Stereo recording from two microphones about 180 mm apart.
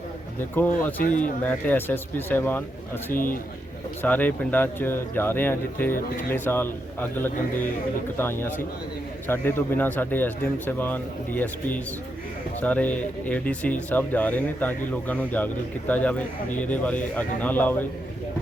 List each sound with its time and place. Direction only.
0.5 s speech: 10° left (ahead or behind)
3.1 s a man's voice: 50° left (ahead or behind)
4.0 s speech: 10° left (ahead or behind)